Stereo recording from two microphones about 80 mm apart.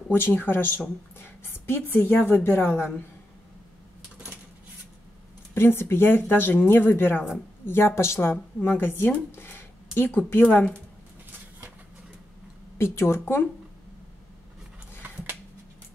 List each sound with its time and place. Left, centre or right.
0.1 s a woman's voice: left
5.5 s a woman's voice: left
12.7 s speech: left
15.0 s a sound: right